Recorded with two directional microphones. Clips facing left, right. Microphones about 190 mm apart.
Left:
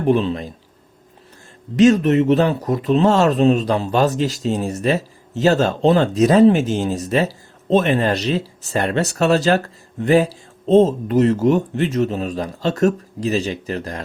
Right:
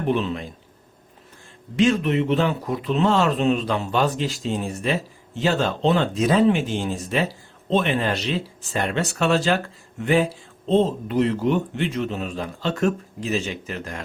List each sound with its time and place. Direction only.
0.1 s speech: 35° left (ahead or behind)
1.7 s speech: 40° left (ahead or behind)